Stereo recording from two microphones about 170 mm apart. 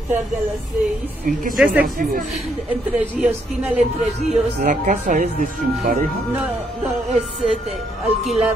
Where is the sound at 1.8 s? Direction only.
60° right (ahead or behind).